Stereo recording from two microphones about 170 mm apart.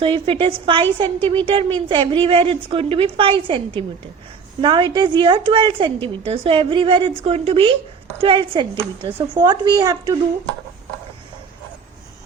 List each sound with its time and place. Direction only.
0.0 s a woman's voice: 30° right (ahead or behind)